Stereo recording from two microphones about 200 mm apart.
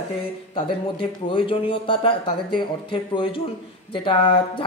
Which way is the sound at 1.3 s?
25° left (ahead or behind).